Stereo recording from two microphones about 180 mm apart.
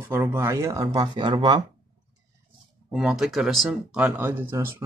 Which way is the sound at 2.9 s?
5° right (ahead or behind).